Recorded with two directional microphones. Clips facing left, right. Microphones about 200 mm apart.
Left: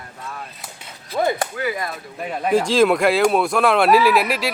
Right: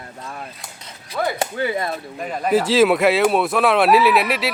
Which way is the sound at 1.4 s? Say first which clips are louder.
Right 2 dB; 25° right (ahead or behind).